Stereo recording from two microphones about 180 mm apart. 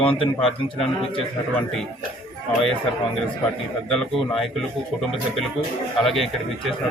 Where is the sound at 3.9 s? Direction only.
Centre (ahead or behind).